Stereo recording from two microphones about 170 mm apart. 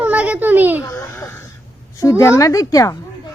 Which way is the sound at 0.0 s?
10° right (ahead or behind).